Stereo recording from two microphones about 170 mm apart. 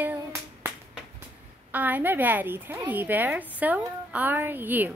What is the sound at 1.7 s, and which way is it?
Speech, 10° right (ahead or behind).